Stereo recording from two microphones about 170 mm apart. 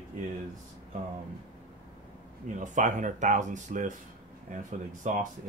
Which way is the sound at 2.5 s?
45° right (ahead or behind).